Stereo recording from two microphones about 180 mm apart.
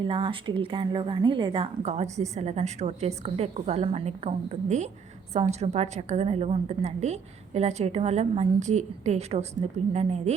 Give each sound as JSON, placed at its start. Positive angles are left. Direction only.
{"t": 0.0, "sound": "a woman's voice", "side_deg": -30}